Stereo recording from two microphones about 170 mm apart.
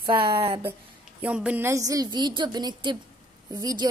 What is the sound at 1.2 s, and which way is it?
A woman's voice, 10° right (ahead or behind).